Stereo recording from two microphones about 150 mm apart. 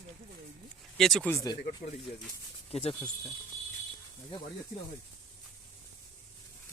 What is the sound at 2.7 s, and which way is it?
Speech, 40° left (ahead or behind).